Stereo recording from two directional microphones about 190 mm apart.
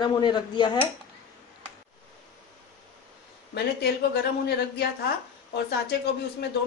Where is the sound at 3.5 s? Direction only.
60° left (ahead or behind).